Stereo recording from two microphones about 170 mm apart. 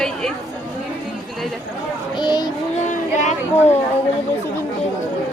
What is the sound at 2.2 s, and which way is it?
Child singing, 25° left (ahead or behind).